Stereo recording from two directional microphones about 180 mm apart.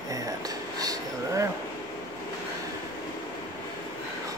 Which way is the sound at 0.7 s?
20° right (ahead or behind).